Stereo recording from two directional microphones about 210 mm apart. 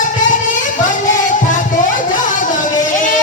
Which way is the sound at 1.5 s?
40° left (ahead or behind).